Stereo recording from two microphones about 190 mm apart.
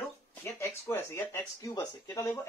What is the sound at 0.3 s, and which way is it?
Speech, 10° left (ahead or behind).